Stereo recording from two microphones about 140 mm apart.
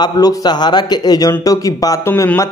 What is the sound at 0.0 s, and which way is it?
Speech, 25° left (ahead or behind).